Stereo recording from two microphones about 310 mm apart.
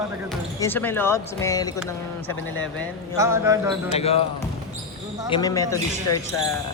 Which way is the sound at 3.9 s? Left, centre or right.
Centre.